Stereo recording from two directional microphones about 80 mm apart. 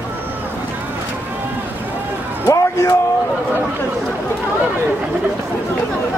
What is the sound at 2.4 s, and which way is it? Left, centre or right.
Music, left.